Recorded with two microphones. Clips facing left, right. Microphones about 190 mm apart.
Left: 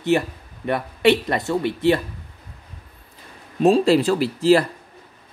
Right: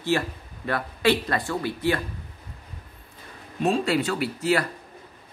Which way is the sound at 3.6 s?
35° left (ahead or behind).